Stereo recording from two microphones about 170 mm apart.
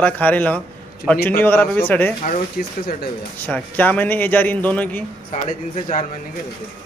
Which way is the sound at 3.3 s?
10° left (ahead or behind).